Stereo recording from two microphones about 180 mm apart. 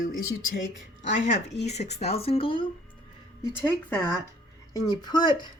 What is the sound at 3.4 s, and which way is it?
Speech, 10° left (ahead or behind).